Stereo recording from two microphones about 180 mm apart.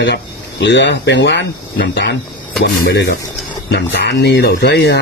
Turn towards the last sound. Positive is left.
turn(degrees=70)  # may be behind; listen again after turning